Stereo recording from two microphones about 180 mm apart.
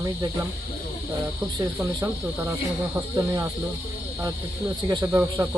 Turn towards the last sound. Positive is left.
turn(degrees=-20)  # may be behind; listen again after turning